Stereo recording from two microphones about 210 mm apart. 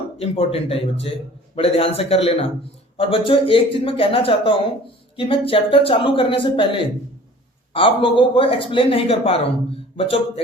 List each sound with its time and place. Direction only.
0.2 s speech: 30° left (ahead or behind)